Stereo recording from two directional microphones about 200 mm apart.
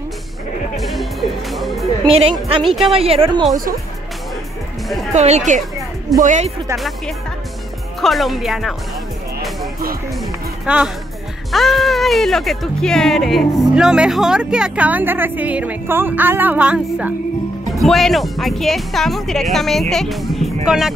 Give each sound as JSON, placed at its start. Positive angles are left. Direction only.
{"t": 0.7, "sound": "music", "side_deg": 0}
{"t": 2.1, "sound": "a woman's voice", "side_deg": -30}
{"t": 2.6, "sound": "speech", "side_deg": 0}
{"t": 2.9, "sound": "a woman's voice", "side_deg": -30}
{"t": 5.1, "sound": "speech", "side_deg": -35}
{"t": 8.0, "sound": "speech", "side_deg": 0}
{"t": 10.6, "sound": "speech", "side_deg": -5}